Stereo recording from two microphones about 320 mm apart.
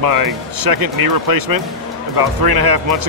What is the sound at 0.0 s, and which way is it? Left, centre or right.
Speech, right.